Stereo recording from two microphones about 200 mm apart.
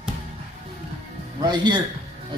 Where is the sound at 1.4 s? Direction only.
20° right (ahead or behind).